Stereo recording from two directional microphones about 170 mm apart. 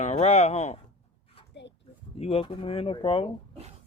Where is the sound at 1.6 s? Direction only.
90° left.